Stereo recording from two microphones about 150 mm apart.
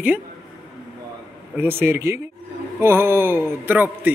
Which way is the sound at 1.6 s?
15° right (ahead or behind).